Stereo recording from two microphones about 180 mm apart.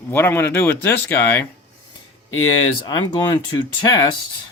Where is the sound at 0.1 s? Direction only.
15° left (ahead or behind).